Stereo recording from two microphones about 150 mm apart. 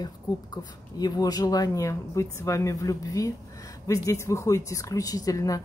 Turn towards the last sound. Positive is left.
turn(degrees=20)  # may be behind; listen again after turning